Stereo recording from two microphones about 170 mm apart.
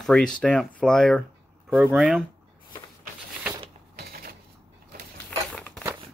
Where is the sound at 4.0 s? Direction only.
60° right (ahead or behind).